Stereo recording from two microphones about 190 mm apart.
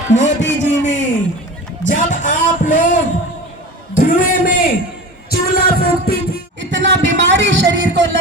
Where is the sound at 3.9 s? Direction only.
45° left (ahead or behind).